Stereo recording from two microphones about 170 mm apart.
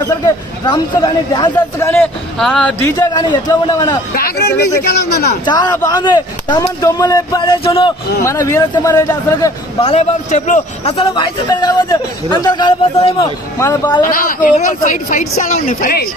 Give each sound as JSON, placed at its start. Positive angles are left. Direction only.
{"t": 0.7, "sound": "a man's voice", "side_deg": 25}
{"t": 1.5, "sound": "a man's voice", "side_deg": 10}
{"t": 2.8, "sound": "a man's voice", "side_deg": 25}
{"t": 4.1, "sound": "speech", "side_deg": 65}
{"t": 5.4, "sound": "a man's voice", "side_deg": 25}
{"t": 8.2, "sound": "a man's voice", "side_deg": 15}
{"t": 9.9, "sound": "speech", "side_deg": 50}
{"t": 11.0, "sound": "a man's voice", "side_deg": 30}
{"t": 14.0, "sound": "speech", "side_deg": 55}